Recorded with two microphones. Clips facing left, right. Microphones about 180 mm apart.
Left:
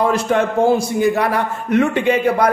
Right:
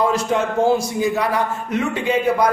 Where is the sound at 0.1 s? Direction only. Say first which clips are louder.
Left 3 dB; 60° left (ahead or behind).